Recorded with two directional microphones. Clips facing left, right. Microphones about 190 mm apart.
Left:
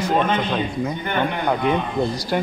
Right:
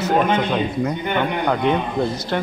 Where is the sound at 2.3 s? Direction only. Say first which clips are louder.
Left 2 dB; 10° left (ahead or behind).